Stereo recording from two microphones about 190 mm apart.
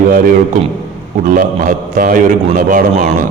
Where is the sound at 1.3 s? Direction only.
45° right (ahead or behind).